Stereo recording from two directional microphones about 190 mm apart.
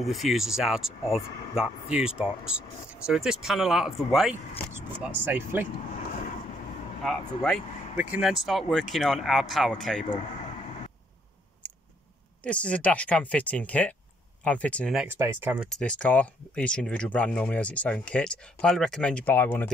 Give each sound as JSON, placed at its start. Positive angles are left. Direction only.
{"t": 0.0, "sound": "speech", "side_deg": 0}
{"t": 7.0, "sound": "speech", "side_deg": 0}
{"t": 11.6, "sound": "a sound", "side_deg": 5}
{"t": 12.4, "sound": "speech", "side_deg": 5}
{"t": 15.0, "sound": "speech", "side_deg": -10}